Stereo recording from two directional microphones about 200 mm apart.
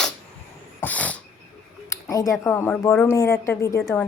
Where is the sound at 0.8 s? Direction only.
10° left (ahead or behind).